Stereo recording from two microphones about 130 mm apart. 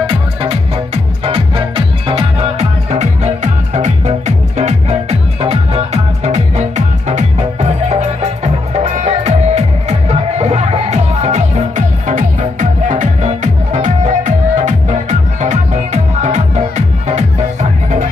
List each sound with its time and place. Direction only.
0.0 s music: 50° right (ahead or behind)
6.2 s music: 60° right (ahead or behind)